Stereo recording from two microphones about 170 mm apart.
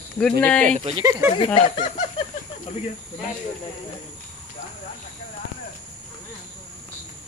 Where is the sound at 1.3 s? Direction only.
30° left (ahead or behind).